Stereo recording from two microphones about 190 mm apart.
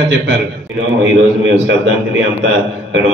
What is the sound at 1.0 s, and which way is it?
Speech, 85° right.